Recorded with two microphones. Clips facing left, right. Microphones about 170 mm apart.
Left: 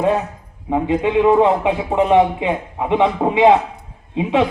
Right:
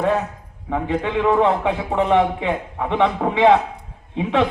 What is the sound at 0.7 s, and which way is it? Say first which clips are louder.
A man's voice: left 5 dB; 15° left (ahead or behind).